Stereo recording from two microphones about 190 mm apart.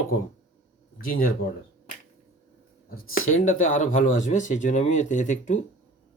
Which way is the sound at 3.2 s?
90° left.